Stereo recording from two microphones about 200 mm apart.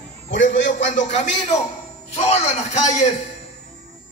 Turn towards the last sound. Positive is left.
turn(degrees=35)  # may be behind; listen again after turning